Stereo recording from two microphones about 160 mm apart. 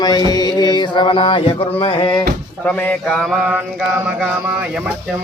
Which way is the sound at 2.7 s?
10° left (ahead or behind).